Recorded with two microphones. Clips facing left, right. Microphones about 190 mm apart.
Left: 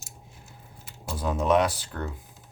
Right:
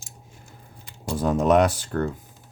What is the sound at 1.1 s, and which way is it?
Speech, 45° right (ahead or behind).